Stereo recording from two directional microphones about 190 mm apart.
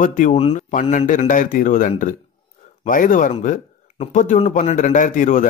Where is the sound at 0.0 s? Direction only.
40° left (ahead or behind).